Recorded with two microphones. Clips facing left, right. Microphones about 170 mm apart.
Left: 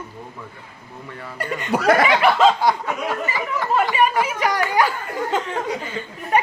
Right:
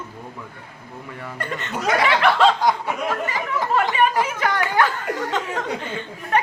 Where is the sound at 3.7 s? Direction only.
10° left (ahead or behind).